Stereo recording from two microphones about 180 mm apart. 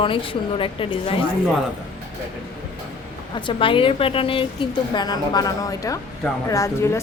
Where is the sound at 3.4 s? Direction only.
25° left (ahead or behind).